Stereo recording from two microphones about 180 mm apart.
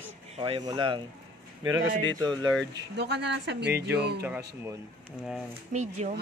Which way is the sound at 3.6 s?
15° right (ahead or behind).